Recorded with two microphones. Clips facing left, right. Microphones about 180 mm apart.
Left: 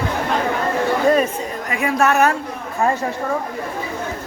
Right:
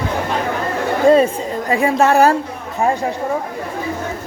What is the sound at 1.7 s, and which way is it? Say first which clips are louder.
Speech: right 4 dB; 30° right (ahead or behind).